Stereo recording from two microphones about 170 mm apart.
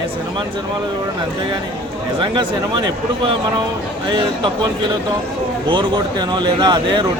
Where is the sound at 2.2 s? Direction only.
25° right (ahead or behind).